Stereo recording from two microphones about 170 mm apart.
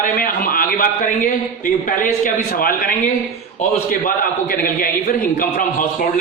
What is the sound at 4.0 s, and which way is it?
A man's voice, 55° left (ahead or behind).